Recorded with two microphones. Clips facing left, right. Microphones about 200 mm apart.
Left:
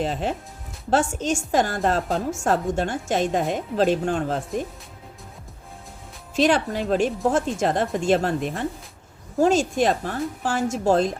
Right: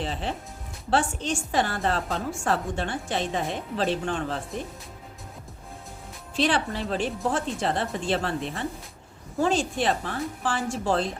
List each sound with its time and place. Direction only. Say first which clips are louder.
0.0 s a woman's voice: left 5 dB; 45° left (ahead or behind)
6.3 s a woman's voice: left 5 dB; 45° left (ahead or behind)